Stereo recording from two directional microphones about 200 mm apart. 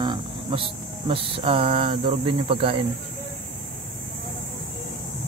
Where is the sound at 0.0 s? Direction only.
25° right (ahead or behind).